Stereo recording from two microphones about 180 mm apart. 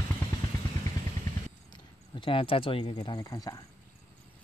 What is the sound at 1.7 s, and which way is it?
Speech, 25° left (ahead or behind).